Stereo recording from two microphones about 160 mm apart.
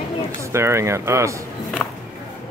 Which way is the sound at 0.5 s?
15° right (ahead or behind).